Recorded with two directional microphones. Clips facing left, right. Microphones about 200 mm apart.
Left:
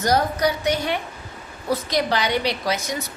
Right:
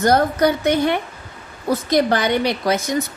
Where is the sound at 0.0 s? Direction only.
55° right (ahead or behind).